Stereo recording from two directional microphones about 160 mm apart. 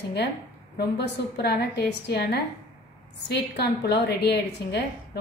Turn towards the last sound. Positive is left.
turn(degrees=90)